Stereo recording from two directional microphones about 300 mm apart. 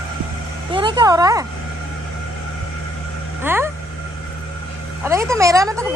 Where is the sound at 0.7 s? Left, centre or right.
Centre.